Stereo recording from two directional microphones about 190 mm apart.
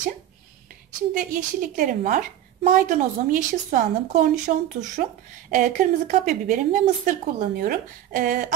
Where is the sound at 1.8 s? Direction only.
45° right (ahead or behind).